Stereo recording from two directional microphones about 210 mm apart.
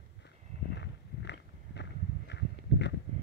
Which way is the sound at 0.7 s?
55° left (ahead or behind).